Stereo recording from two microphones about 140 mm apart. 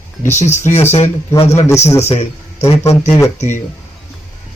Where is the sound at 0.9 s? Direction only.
45° left (ahead or behind).